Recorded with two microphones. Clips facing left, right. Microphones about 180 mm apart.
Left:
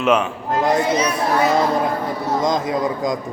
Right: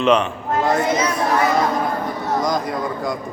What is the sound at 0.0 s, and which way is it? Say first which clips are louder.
Speech: right 1 dB; 5° left (ahead or behind).